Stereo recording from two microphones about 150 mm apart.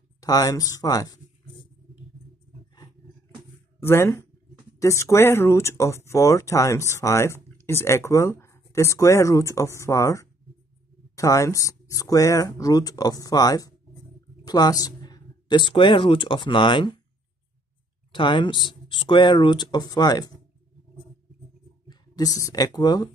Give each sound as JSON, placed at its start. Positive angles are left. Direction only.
{"t": 0.2, "sound": "speech", "side_deg": 25}
{"t": 3.8, "sound": "speech", "side_deg": 15}
{"t": 18.1, "sound": "speech", "side_deg": 30}
{"t": 21.8, "sound": "speech", "side_deg": 25}